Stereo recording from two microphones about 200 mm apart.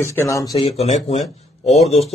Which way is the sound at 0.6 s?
30° left (ahead or behind).